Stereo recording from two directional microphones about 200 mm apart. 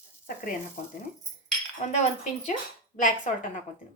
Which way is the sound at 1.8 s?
35° left (ahead or behind).